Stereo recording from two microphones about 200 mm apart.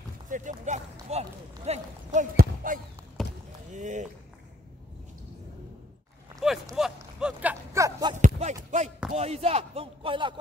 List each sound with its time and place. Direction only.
0.3 s speech: 40° right (ahead or behind)
2.3 s speech: 45° right (ahead or behind)
3.2 s basketball bounce: centre (ahead or behind)
3.7 s speech: 35° right (ahead or behind)
6.4 s speech: centre (ahead or behind)
7.7 s speech: 15° right (ahead or behind)
8.1 s a sound: 35° right (ahead or behind)
9.1 s speech: 30° right (ahead or behind)